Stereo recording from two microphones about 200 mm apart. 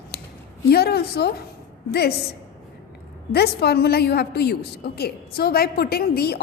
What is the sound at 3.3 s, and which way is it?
A woman's voice, 55° left (ahead or behind).